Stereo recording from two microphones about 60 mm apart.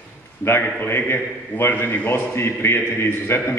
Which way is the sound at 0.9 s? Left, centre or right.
Left.